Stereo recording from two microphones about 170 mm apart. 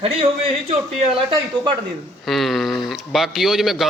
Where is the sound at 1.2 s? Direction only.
25° right (ahead or behind).